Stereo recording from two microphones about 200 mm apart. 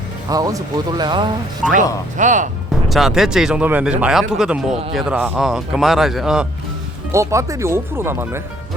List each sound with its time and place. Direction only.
0.3 s speech: 20° right (ahead or behind)
2.1 s speech: 40° right (ahead or behind)
2.9 s speech: centre (ahead or behind)
7.1 s speech: 15° right (ahead or behind)